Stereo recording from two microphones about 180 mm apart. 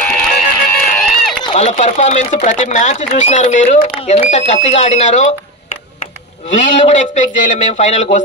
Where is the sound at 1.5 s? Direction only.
40° left (ahead or behind).